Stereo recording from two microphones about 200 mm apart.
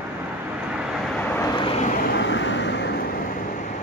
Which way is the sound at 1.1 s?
10° left (ahead or behind).